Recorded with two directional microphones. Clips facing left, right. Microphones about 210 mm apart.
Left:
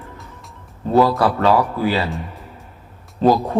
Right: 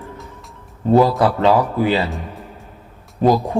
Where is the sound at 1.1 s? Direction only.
20° right (ahead or behind).